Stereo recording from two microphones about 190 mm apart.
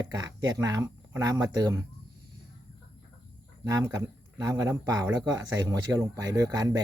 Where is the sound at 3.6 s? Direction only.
20° right (ahead or behind).